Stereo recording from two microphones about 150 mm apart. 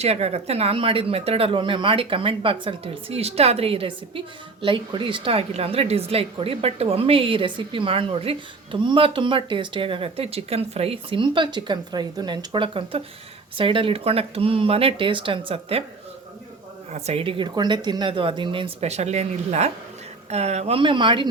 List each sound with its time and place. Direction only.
0.0 s a woman's voice: 45° right (ahead or behind)
16.9 s a woman's voice: 45° right (ahead or behind)